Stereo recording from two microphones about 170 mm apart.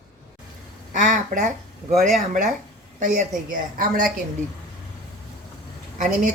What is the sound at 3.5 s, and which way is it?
Speech, 55° right (ahead or behind).